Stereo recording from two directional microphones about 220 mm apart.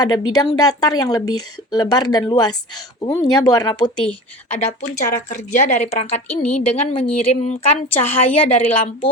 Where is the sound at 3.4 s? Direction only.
20° left (ahead or behind).